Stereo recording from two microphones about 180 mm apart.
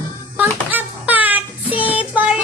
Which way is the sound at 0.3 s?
10° right (ahead or behind).